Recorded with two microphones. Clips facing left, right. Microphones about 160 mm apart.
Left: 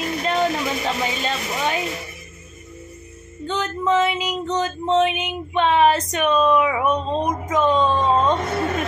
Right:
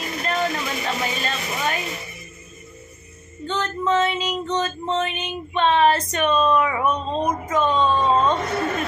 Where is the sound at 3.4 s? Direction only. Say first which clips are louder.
Left 1 dB; 10° left (ahead or behind).